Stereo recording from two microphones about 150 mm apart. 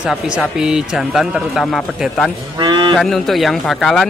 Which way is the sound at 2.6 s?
35° right (ahead or behind).